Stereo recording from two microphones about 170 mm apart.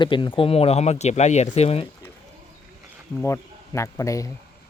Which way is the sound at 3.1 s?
15° left (ahead or behind).